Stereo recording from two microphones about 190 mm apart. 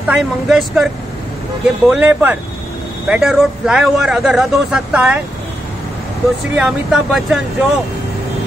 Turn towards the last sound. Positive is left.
turn(degrees=0)  # may be behind; listen again after turning